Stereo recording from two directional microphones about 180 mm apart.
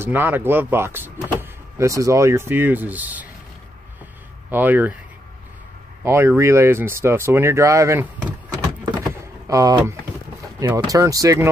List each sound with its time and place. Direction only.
0.0 s speech: 10° right (ahead or behind)
4.5 s speech: 10° right (ahead or behind)
6.0 s speech: 15° right (ahead or behind)
9.1 s vehicle: 20° right (ahead or behind)
10.6 s speech: 15° right (ahead or behind)